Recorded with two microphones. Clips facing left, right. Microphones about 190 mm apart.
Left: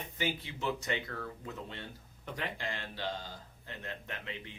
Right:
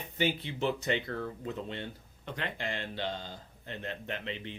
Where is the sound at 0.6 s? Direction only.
25° right (ahead or behind).